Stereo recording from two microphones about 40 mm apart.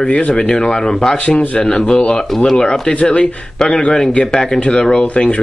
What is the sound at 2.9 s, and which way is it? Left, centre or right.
Speech, left.